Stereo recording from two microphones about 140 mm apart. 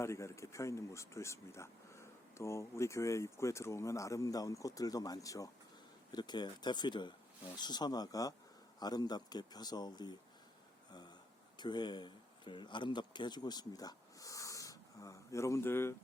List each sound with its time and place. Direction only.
0.0 s speech: 20° left (ahead or behind)
11.5 s speech: 30° left (ahead or behind)